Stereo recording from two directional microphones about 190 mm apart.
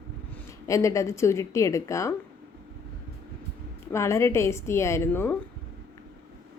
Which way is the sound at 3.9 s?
15° left (ahead or behind).